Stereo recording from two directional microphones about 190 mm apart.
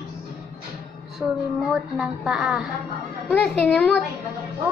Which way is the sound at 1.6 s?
Centre (ahead or behind).